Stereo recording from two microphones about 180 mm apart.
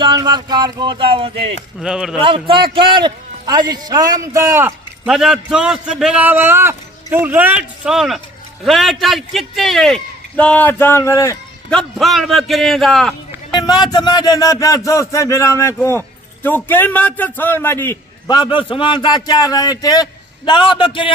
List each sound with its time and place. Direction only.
0.0 s speech: 25° right (ahead or behind)
1.8 s a man's voice: 5° right (ahead or behind)
2.2 s a man's voice: 30° right (ahead or behind); by 11.3 s 15° left (ahead or behind)
11.7 s a man's voice: centre (ahead or behind)
13.5 s a man's voice: 20° left (ahead or behind)
18.3 s a man's voice: 25° left (ahead or behind)